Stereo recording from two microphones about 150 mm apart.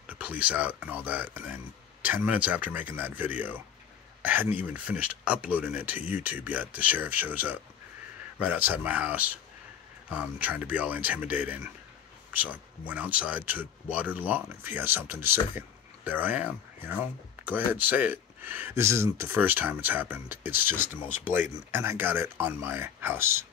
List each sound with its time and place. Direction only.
0.0 s speech: 10° right (ahead or behind)